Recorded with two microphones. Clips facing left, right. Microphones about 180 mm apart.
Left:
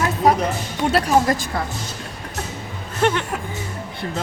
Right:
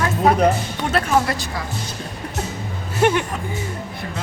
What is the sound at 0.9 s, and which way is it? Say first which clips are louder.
Speech: left 2 dB; 45° left (ahead or behind).